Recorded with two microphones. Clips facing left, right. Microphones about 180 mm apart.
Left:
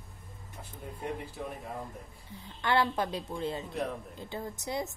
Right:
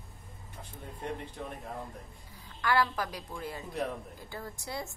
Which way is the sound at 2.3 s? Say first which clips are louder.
Left 1 dB; 25° left (ahead or behind).